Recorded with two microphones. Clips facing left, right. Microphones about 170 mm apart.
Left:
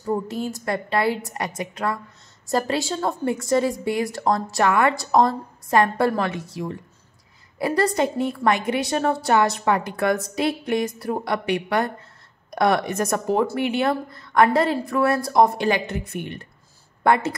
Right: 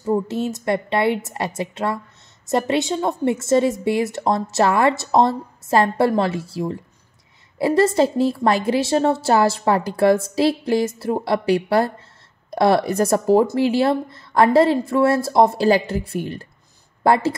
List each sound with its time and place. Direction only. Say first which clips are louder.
0.0 s a woman's voice: right 4 dB; 20° right (ahead or behind)